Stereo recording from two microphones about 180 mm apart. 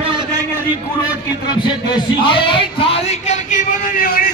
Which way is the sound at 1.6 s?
25° left (ahead or behind).